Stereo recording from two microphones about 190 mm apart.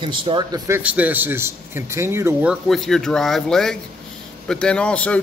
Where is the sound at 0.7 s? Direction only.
5° right (ahead or behind).